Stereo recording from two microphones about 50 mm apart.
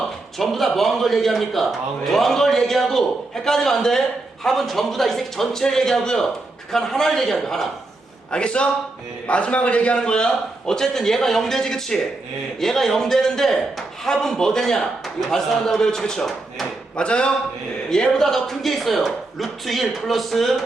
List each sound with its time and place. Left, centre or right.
0.3 s a man's voice: centre
8.3 s a man's voice: centre
16.9 s a man's voice: left
17.9 s speech: centre